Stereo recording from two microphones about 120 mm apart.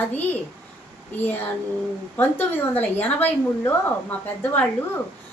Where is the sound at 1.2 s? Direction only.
15° left (ahead or behind).